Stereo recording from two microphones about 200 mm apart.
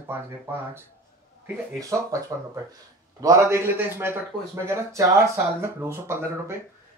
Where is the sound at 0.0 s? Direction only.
10° right (ahead or behind).